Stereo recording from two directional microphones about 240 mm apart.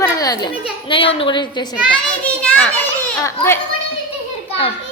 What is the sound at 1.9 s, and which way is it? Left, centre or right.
Children playing, centre.